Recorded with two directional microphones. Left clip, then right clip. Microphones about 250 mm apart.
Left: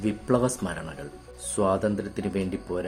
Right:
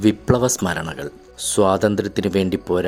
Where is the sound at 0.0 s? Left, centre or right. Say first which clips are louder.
Right 7 dB; right.